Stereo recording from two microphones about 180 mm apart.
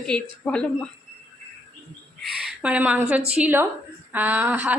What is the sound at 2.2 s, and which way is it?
Speech, 5° right (ahead or behind).